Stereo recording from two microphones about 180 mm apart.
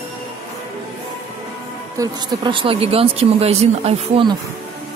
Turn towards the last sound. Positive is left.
turn(degrees=-35)  # may be behind; listen again after turning